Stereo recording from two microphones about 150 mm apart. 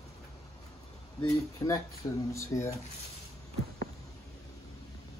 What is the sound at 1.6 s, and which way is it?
Speech, 25° left (ahead or behind).